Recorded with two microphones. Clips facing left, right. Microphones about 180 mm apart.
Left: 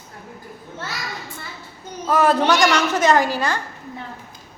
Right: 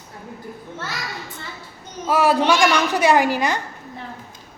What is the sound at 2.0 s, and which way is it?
A woman's voice, 10° right (ahead or behind).